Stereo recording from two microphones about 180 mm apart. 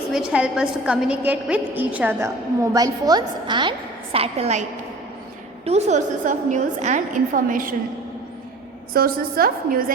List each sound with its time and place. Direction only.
0.1 s a woman's voice: 5° right (ahead or behind)
2.7 s a woman's voice: 20° right (ahead or behind)
5.6 s a woman's voice: 40° right (ahead or behind)
8.9 s a woman's voice: 55° right (ahead or behind)